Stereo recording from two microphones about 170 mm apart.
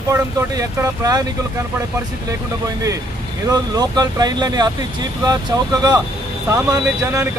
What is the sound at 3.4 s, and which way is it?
Speech, 20° right (ahead or behind).